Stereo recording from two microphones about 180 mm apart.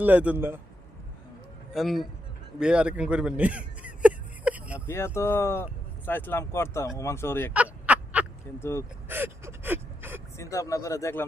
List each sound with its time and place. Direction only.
0.0 s a man's voice: 10° right (ahead or behind)
1.7 s a man's voice: centre (ahead or behind)
2.6 s a sound: 5° right (ahead or behind)
4.9 s speech: 15° left (ahead or behind)
7.5 s fowl: 10° right (ahead or behind)
8.5 s speech: 15° left (ahead or behind)
9.0 s gasp: 10° right (ahead or behind)
10.3 s speech: 15° left (ahead or behind)